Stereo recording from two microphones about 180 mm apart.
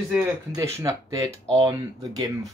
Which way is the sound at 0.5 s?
15° right (ahead or behind).